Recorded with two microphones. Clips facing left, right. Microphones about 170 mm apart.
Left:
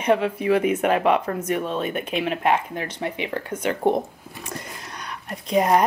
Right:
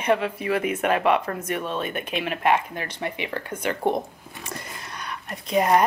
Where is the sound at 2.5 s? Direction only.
10° left (ahead or behind).